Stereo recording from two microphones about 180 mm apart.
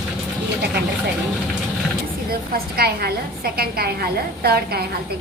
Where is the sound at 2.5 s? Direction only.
60° right (ahead or behind).